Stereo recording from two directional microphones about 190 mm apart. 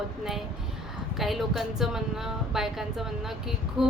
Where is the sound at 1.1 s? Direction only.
Centre (ahead or behind).